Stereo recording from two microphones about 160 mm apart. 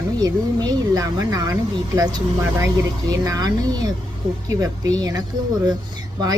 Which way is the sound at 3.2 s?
25° right (ahead or behind).